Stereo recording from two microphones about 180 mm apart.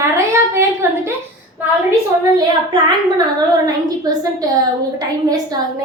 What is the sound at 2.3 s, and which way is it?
A woman's voice, 25° right (ahead or behind).